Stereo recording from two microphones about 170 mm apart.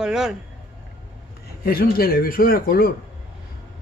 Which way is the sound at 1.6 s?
60° left (ahead or behind).